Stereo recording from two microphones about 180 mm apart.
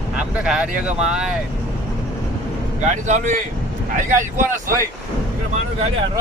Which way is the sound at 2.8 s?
40° right (ahead or behind).